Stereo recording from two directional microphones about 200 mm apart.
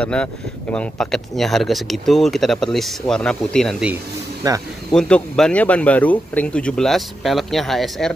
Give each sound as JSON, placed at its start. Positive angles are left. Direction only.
{"t": 0.0, "sound": "speech", "side_deg": 5}
{"t": 4.4, "sound": "speech", "side_deg": -20}
{"t": 4.9, "sound": "speech", "side_deg": 5}